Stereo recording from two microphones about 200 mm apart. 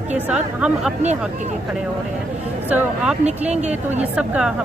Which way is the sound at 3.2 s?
35° right (ahead or behind).